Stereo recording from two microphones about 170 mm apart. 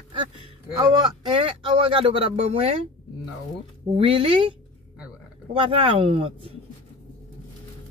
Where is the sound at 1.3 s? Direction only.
30° right (ahead or behind).